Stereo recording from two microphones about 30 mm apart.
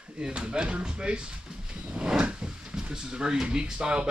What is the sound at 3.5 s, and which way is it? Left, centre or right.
Speech, right.